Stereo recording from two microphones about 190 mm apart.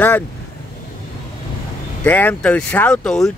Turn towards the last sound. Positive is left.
turn(degrees=5)  # may be behind; listen again after turning